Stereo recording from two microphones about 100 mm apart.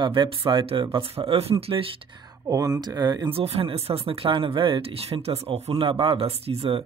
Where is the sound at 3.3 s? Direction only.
75° right (ahead or behind).